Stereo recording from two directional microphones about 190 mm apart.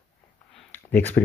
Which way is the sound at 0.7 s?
10° left (ahead or behind).